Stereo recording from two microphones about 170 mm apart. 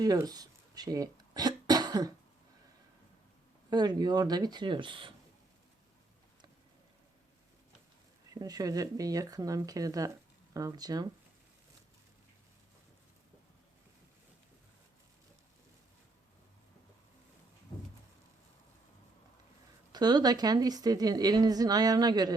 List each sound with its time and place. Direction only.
0.0 s cough: 20° right (ahead or behind)
3.7 s a woman's voice: 25° right (ahead or behind)
8.3 s a woman's voice: 20° right (ahead or behind)
19.9 s a woman's voice: 25° right (ahead or behind)